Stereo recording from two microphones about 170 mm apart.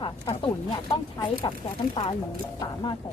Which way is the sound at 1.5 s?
30° left (ahead or behind).